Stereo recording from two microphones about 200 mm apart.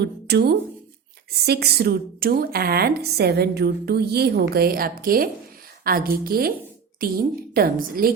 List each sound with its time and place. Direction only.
0.0 s a sound: 55° right (ahead or behind)
1.5 s a woman's voice: 55° right (ahead or behind)
7.5 s a woman's voice: 45° right (ahead or behind)